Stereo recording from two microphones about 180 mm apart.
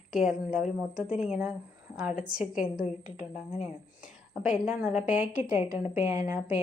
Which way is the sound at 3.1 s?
35° left (ahead or behind).